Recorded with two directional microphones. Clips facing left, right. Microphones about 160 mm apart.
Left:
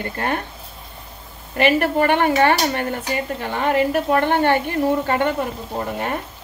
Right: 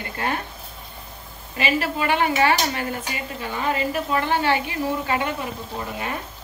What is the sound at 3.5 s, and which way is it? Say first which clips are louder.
Speech: left 6 dB; 65° left (ahead or behind).